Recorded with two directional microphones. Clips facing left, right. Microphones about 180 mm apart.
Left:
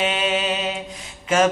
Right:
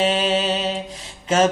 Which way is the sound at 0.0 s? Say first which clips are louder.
Right 3 dB; 35° right (ahead or behind).